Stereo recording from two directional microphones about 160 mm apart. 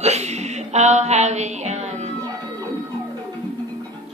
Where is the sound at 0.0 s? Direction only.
45° right (ahead or behind).